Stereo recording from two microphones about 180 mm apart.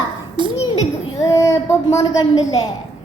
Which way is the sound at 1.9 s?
20° left (ahead or behind).